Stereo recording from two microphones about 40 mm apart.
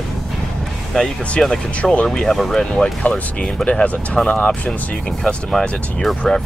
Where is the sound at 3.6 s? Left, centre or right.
Left.